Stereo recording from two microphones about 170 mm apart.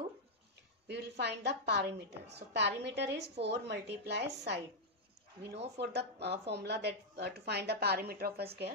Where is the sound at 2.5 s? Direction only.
90° right.